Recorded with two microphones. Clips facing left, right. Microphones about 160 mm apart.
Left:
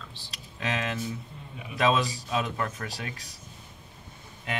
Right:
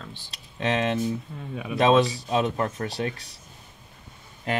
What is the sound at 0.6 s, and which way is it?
Speech, 30° right (ahead or behind).